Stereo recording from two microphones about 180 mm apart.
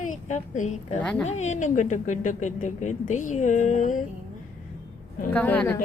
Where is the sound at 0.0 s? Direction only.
45° left (ahead or behind).